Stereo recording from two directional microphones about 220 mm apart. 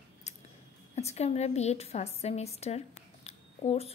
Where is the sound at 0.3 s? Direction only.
30° left (ahead or behind).